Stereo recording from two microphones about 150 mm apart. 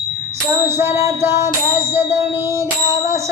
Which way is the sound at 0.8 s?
15° right (ahead or behind).